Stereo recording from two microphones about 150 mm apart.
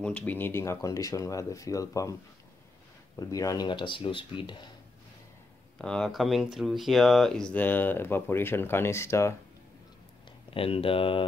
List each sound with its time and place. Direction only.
0.0 s speech: 10° left (ahead or behind)
3.2 s speech: 25° left (ahead or behind)
5.8 s speech: 5° left (ahead or behind)
10.5 s speech: 35° left (ahead or behind)